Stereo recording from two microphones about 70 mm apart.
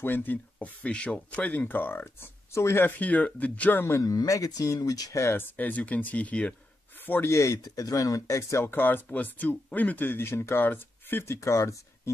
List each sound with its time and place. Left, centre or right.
0.0 s speech: left
3.0 s speech: left
4.0 s speech: left
5.1 s speech: left
5.4 s speech: left
7.1 s speech: left
7.3 s speech: left
7.6 s speech: left
11.3 s speech: left